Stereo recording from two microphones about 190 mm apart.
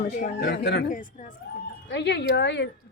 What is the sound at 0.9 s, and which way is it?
Speech, 45° left (ahead or behind).